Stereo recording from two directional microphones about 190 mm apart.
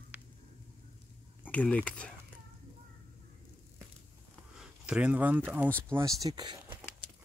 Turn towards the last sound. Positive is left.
turn(degrees=-20)  # may be behind; listen again after turning